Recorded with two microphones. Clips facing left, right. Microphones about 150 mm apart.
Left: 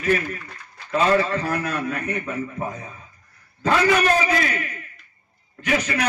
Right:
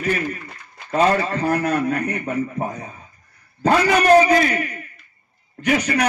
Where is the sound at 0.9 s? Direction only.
35° right (ahead or behind).